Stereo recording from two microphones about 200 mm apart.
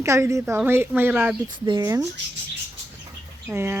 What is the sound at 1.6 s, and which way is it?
Speech, 20° right (ahead or behind).